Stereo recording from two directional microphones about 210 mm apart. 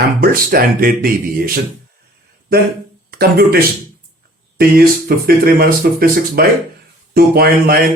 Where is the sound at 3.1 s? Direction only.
45° right (ahead or behind).